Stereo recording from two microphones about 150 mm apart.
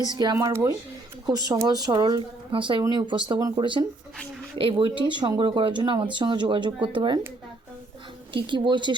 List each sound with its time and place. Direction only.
0.0 s speech: 30° right (ahead or behind)
8.3 s speech: 35° right (ahead or behind)